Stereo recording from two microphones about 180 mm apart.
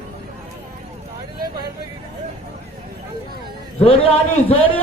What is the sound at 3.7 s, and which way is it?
Speech, 35° left (ahead or behind).